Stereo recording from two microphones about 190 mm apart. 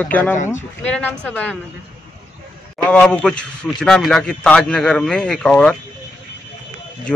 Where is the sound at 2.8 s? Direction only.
5° left (ahead or behind).